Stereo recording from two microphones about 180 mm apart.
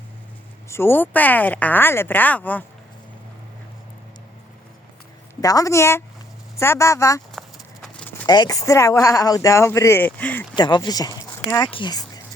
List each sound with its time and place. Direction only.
0.7 s speech: 10° left (ahead or behind)
5.4 s speech: 20° left (ahead or behind)
7.3 s clip-clop: 5° left (ahead or behind)
8.3 s speech: 20° left (ahead or behind)
10.5 s speech: 25° left (ahead or behind)
11.2 s a sound: 20° left (ahead or behind)
11.7 s speech: 25° left (ahead or behind)